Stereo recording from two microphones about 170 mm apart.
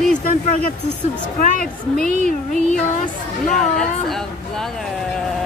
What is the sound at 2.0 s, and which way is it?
Speech, 45° right (ahead or behind).